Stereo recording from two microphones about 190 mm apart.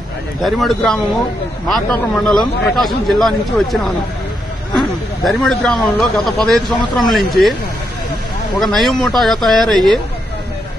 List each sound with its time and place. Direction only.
0.4 s speech: centre (ahead or behind)
8.5 s speech: centre (ahead or behind)